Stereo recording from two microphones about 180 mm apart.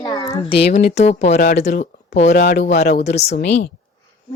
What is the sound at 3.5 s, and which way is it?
Speech, 75° left (ahead or behind).